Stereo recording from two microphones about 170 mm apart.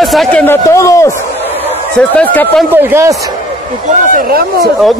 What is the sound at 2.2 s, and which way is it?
Speech, 10° left (ahead or behind).